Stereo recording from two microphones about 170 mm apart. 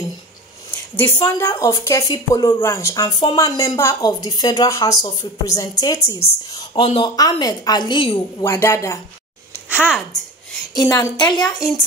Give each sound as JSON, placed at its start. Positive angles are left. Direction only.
{"t": 1.2, "sound": "a woman's voice", "side_deg": 15}
{"t": 8.5, "sound": "speech", "side_deg": 15}
{"t": 9.7, "sound": "a woman's voice", "side_deg": -10}
{"t": 10.7, "sound": "a woman's voice", "side_deg": 15}